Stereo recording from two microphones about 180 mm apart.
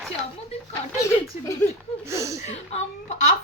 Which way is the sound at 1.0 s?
15° left (ahead or behind).